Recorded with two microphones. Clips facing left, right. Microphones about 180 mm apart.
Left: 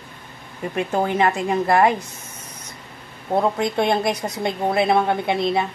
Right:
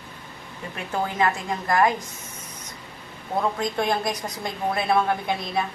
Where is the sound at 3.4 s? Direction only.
25° left (ahead or behind).